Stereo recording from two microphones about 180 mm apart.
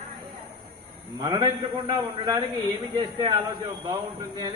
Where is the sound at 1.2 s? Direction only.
25° right (ahead or behind).